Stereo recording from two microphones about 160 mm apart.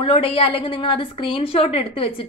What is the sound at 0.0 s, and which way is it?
A woman's voice, 35° left (ahead or behind).